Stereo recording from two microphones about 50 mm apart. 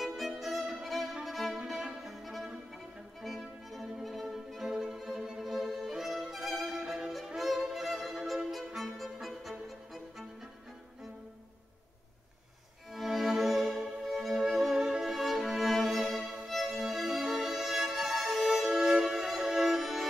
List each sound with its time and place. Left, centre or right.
0.0 s violin: centre
1.7 s music: centre
4.0 s violin: centre
6.8 s violin: centre
7.1 s violin: centre
12.9 s music: centre
14.8 s music: centre
15.0 s music: centre